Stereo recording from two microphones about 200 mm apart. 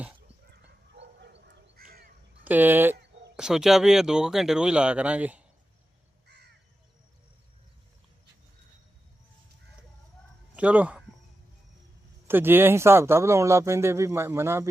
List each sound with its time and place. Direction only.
0.9 s dog: 60° right (ahead or behind)
2.4 s speech: 10° right (ahead or behind)
6.2 s crow: 55° right (ahead or behind)
10.5 s speech: 5° right (ahead or behind)
12.3 s speech: 10° right (ahead or behind)